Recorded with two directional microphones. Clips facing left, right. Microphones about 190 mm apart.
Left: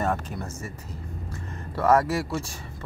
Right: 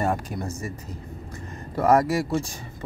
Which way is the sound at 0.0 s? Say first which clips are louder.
Right 2 dB; 10° right (ahead or behind).